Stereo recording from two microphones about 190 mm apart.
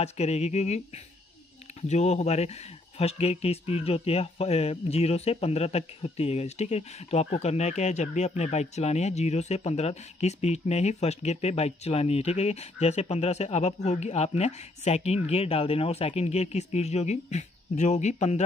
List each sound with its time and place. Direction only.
0.0 s speech: 35° left (ahead or behind)